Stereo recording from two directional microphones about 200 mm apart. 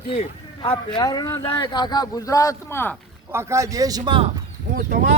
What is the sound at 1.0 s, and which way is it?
A man's voice, 20° left (ahead or behind).